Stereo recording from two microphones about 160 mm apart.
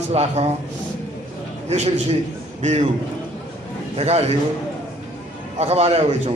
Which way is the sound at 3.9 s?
40° right (ahead or behind).